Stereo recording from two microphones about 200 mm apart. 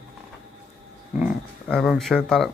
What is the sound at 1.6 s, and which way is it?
Speech, centre (ahead or behind).